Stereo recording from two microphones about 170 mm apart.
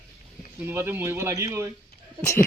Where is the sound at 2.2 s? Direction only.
15° left (ahead or behind).